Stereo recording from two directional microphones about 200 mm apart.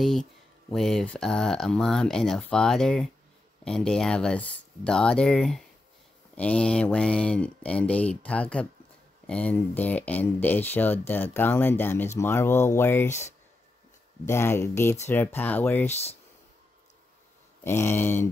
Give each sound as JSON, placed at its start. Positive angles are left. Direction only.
{"t": 0.0, "sound": "speech", "side_deg": 0}
{"t": 14.2, "sound": "speech", "side_deg": 10}
{"t": 15.9, "sound": "speech", "side_deg": 30}
{"t": 17.6, "sound": "speech", "side_deg": 10}